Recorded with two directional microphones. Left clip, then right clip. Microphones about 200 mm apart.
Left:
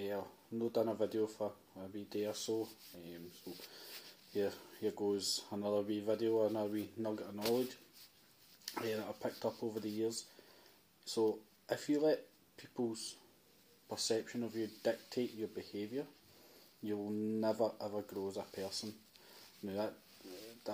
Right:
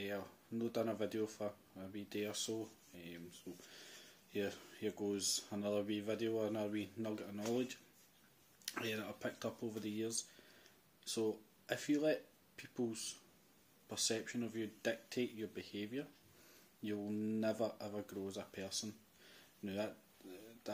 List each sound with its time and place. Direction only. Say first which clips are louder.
0.0 s speech: left 3 dB; 10° right (ahead or behind)
3.5 s speech: left 6 dB; 10° right (ahead or behind)
4.8 s speech: left 4 dB; 10° right (ahead or behind)
8.6 s speech: left 3 dB; 10° right (ahead or behind)
14.0 s speech: left 3 dB; 15° right (ahead or behind)